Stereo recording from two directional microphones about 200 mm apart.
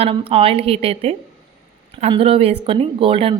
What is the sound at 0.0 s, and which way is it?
A woman's voice, 25° right (ahead or behind).